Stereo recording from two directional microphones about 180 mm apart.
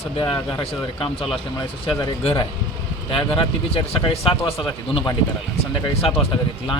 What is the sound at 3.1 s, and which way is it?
A man's voice, 30° left (ahead or behind).